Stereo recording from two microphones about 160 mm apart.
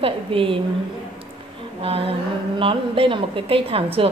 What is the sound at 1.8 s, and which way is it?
A woman's voice, 35° right (ahead or behind).